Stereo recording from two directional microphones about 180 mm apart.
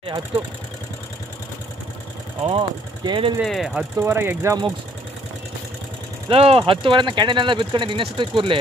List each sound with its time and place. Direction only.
2.4 s speech: 25° right (ahead or behind)
3.3 s speech: centre (ahead or behind)
4.0 s speech: 15° right (ahead or behind)
6.2 s speech: 30° right (ahead or behind)